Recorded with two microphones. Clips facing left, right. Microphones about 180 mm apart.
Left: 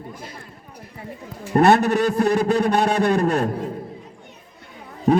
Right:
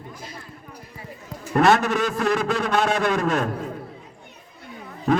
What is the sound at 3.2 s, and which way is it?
Speech, 35° left (ahead or behind).